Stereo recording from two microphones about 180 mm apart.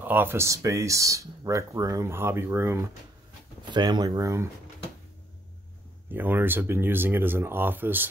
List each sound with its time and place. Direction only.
0.0 s speech: 10° right (ahead or behind)
3.7 s speech: 25° right (ahead or behind)
6.1 s speech: 10° right (ahead or behind)